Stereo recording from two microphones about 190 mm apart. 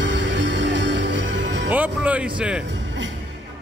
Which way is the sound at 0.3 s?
70° right (ahead or behind).